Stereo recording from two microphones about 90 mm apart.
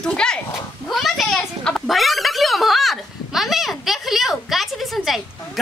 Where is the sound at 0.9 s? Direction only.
Centre (ahead or behind).